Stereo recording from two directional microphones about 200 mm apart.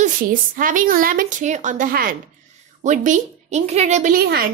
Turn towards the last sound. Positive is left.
turn(degrees=-50)  # may be behind; listen again after turning